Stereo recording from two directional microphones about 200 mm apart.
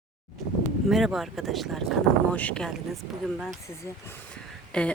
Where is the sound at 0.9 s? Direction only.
Centre (ahead or behind).